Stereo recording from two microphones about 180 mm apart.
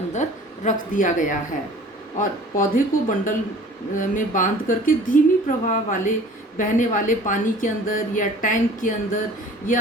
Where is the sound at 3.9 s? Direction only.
45° left (ahead or behind).